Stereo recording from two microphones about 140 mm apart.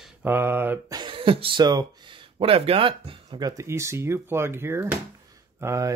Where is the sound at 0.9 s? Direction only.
35° right (ahead or behind).